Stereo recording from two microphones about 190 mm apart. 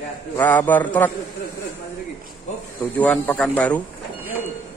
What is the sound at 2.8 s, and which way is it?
Speech, 5° left (ahead or behind).